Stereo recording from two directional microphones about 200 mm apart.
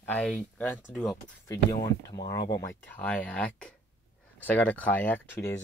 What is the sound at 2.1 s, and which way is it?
Speech, 20° left (ahead or behind).